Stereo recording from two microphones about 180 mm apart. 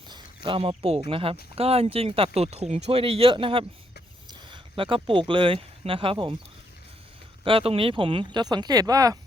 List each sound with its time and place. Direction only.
0.1 s speech: 30° right (ahead or behind)
7.4 s speech: 30° right (ahead or behind)